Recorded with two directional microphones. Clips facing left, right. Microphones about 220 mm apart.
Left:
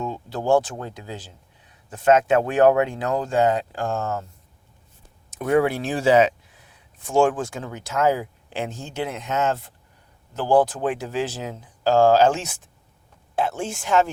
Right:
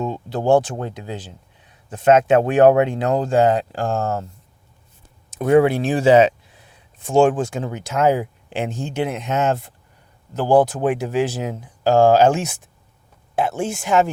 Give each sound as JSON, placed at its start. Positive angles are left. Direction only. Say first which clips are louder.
{"t": 0.0, "sound": "speech", "louder": "right 5 dB", "side_deg": -20}
{"t": 5.4, "sound": "speech", "louder": "right 5 dB", "side_deg": -25}
{"t": 10.7, "sound": "speech", "louder": "right 5 dB", "side_deg": -10}